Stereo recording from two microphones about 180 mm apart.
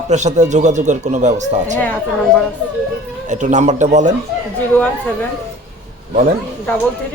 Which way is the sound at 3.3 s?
40° right (ahead or behind).